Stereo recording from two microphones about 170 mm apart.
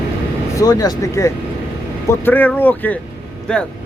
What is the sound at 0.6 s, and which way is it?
Speech, 20° left (ahead or behind).